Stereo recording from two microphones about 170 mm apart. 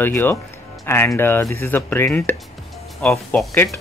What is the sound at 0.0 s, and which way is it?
Speech, 10° left (ahead or behind).